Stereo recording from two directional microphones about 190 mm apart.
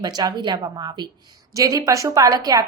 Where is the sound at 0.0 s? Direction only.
20° right (ahead or behind).